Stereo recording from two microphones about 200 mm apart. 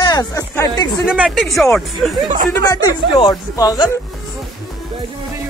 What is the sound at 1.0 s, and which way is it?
Speech, 5° right (ahead or behind).